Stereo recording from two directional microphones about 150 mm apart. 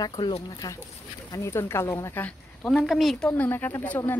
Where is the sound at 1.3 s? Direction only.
15° left (ahead or behind).